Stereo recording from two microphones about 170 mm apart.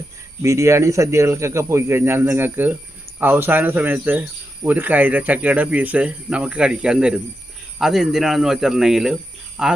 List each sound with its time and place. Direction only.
0.4 s speech: 15° right (ahead or behind); by 9.7 s centre (ahead or behind)